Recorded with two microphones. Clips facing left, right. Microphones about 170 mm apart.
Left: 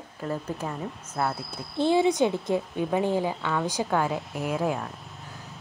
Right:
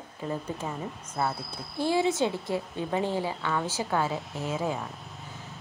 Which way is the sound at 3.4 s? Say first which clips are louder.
Left 2 dB; centre (ahead or behind).